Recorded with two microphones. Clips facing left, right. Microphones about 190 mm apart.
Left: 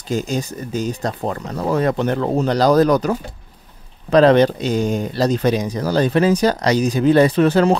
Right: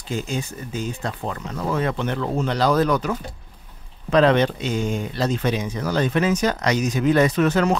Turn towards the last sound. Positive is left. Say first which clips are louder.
# left 5 dB
turn(degrees=30)  # may be behind; listen again after turning